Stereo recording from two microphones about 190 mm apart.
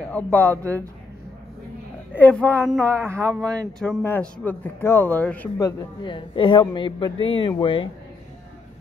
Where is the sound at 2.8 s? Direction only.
15° right (ahead or behind).